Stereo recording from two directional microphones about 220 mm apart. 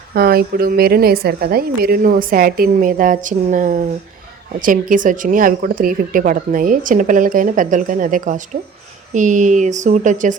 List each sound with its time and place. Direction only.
0.1 s speech: 45° right (ahead or behind)